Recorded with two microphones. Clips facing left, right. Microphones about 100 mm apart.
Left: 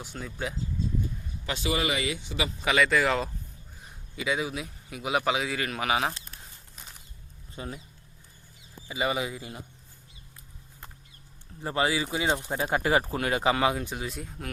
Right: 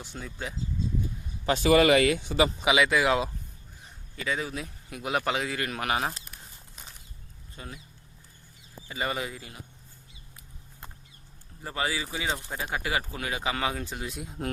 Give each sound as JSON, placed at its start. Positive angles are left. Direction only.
{"t": 0.0, "sound": "a man's voice", "side_deg": 0}
{"t": 1.5, "sound": "speech", "side_deg": -55}
{"t": 2.6, "sound": "a man's voice", "side_deg": -10}
{"t": 4.2, "sound": "a man's voice", "side_deg": 10}
{"t": 6.2, "sound": "a sound", "side_deg": -5}
{"t": 7.5, "sound": "speech", "side_deg": 20}
{"t": 8.9, "sound": "speech", "side_deg": 5}
{"t": 11.6, "sound": "speech", "side_deg": 20}
{"t": 13.7, "sound": "a man's voice", "side_deg": 5}